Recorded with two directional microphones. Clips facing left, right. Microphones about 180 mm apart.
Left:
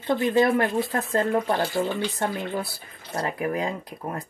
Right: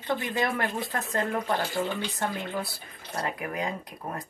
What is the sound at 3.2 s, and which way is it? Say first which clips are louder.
A woman's voice: left 5 dB; 30° left (ahead or behind).